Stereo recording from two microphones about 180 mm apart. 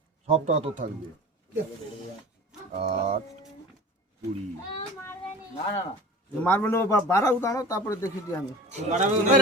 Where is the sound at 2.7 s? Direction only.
35° right (ahead or behind).